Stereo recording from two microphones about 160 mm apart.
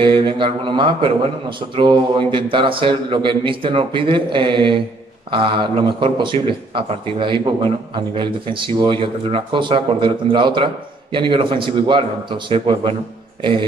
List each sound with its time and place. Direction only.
0.0 s speech: 30° right (ahead or behind)